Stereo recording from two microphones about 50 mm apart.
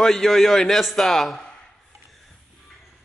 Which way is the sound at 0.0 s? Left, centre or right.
Centre.